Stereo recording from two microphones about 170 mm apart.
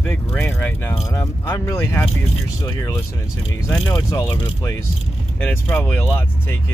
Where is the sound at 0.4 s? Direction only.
10° left (ahead or behind).